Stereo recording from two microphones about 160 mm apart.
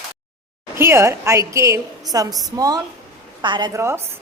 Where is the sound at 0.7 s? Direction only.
15° right (ahead or behind).